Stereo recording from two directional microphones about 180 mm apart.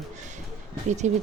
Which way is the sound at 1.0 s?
40° right (ahead or behind).